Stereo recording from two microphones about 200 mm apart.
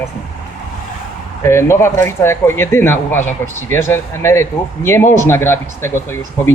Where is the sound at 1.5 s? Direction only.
15° left (ahead or behind).